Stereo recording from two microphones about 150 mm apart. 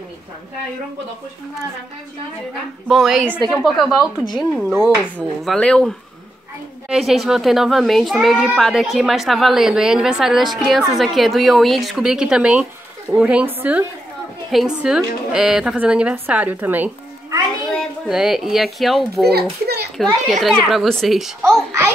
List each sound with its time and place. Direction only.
2.9 s a woman's voice: centre (ahead or behind)
18.0 s a woman's voice: 5° right (ahead or behind)
19.6 s children playing: 90° right
20.2 s a woman's voice: centre (ahead or behind)
21.5 s a child's voice: 20° right (ahead or behind)